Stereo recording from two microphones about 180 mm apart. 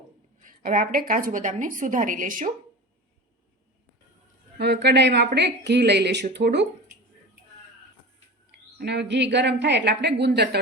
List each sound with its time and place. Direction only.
0.3 s a woman's voice: 50° right (ahead or behind)
4.5 s a woman's voice: 70° right (ahead or behind)
8.8 s a woman's voice: 70° right (ahead or behind)